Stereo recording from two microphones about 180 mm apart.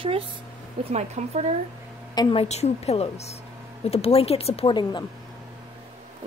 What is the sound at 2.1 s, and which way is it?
A woman's voice, 25° left (ahead or behind).